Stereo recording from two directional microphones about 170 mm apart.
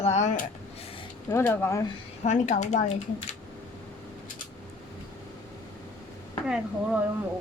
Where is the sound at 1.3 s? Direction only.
15° left (ahead or behind).